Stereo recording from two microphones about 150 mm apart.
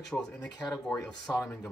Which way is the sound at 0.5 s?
25° left (ahead or behind).